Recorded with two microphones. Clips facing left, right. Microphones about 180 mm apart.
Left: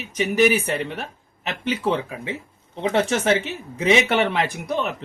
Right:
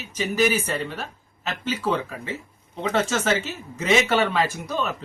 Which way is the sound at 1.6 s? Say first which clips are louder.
Left 2 dB; 65° left (ahead or behind).